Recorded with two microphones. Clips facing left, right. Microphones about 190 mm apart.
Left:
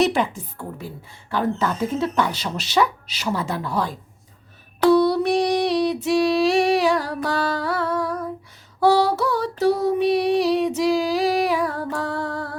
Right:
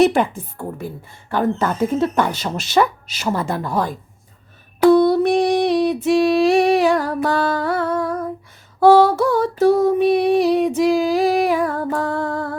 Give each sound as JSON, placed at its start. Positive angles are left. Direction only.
{"t": 0.0, "sound": "a woman's voice", "side_deg": -50}
{"t": 8.8, "sound": "female singing", "side_deg": -50}